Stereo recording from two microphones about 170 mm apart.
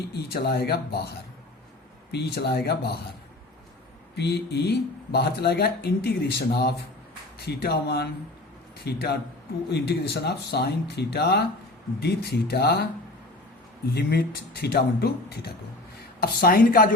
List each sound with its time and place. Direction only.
0.1 s speech: 65° left (ahead or behind)
2.1 s speech: 75° left (ahead or behind)
4.1 s speech: 75° left (ahead or behind)
13.9 s speech: 70° left (ahead or behind)
16.2 s a woman's voice: 60° left (ahead or behind)